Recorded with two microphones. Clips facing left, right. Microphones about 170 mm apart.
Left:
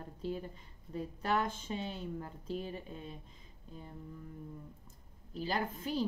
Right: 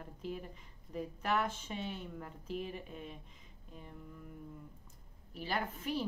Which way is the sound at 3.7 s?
35° left (ahead or behind).